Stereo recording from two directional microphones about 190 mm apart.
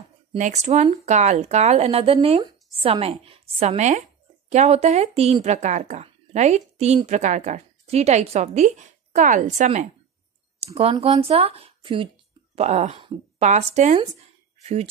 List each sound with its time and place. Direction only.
0.4 s speech: 35° right (ahead or behind)
12.5 s speech: 35° right (ahead or behind)